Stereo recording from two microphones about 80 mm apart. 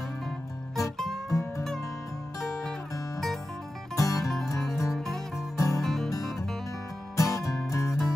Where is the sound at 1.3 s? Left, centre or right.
Left.